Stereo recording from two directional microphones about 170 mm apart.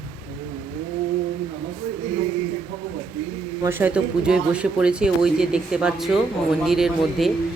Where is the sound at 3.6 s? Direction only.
10° right (ahead or behind).